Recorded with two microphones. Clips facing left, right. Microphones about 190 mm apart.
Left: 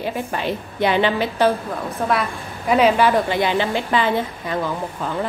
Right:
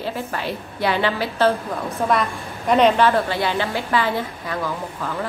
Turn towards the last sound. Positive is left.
turn(degrees=20)  # may be behind; listen again after turning